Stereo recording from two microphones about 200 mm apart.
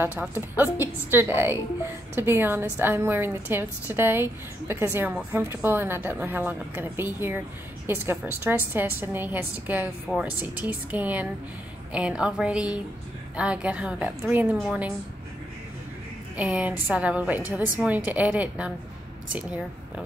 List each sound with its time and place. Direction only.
0.0 s a woman's voice: 10° right (ahead or behind)
16.3 s a woman's voice: 5° right (ahead or behind)